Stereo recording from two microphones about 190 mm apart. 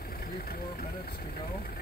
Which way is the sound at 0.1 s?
50° left (ahead or behind).